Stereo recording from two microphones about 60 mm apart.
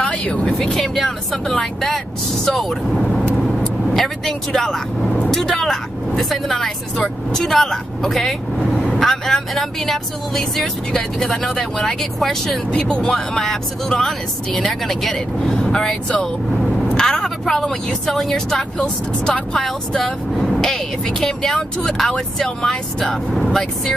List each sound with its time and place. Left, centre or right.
0.1 s speech: left
0.5 s speech: centre
3.0 s vehicle: centre
3.9 s a woman's voice: centre